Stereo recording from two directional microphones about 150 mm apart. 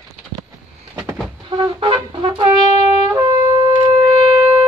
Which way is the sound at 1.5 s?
30° right (ahead or behind).